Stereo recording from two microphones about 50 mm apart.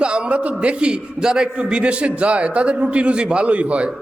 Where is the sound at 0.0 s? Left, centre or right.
Right.